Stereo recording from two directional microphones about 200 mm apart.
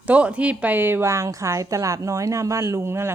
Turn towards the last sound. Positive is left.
turn(degrees=-15)  # may be behind; listen again after turning